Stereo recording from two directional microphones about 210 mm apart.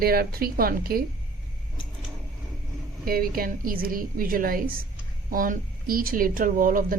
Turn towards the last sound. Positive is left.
turn(degrees=-40)  # may be behind; listen again after turning